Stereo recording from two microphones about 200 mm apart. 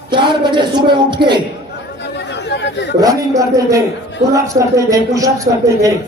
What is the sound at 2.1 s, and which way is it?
Chatter, 60° left (ahead or behind).